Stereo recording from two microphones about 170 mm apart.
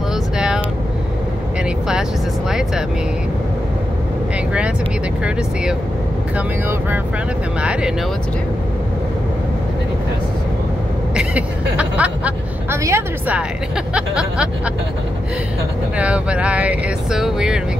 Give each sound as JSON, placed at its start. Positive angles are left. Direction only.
{"t": 11.1, "sound": "speech", "side_deg": -5}
{"t": 13.9, "sound": "music", "side_deg": -5}
{"t": 16.0, "sound": "speech", "side_deg": -5}